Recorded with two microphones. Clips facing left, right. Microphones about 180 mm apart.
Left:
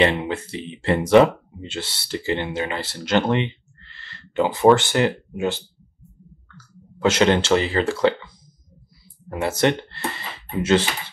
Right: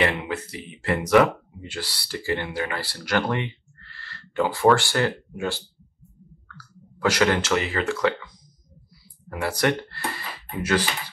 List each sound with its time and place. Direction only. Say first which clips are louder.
0.0 s speech: left 4 dB; 30° left (ahead or behind)
9.3 s speech: left 3 dB; 25° left (ahead or behind)